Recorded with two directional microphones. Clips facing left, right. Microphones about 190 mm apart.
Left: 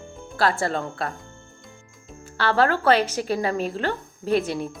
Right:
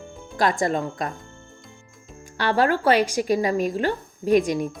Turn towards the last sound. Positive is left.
turn(degrees=-15)  # may be behind; listen again after turning